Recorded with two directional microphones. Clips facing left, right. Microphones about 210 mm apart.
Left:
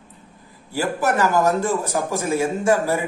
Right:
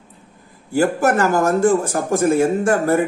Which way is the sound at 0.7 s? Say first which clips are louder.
Right 5 dB; 50° right (ahead or behind).